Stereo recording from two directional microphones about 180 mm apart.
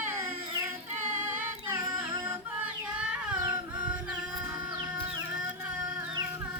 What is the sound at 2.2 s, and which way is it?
Music, 5° right (ahead or behind).